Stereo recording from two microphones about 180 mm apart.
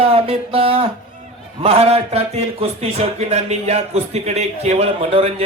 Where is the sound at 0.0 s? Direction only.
30° right (ahead or behind).